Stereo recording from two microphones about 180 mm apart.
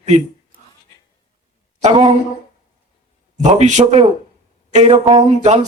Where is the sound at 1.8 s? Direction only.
35° right (ahead or behind).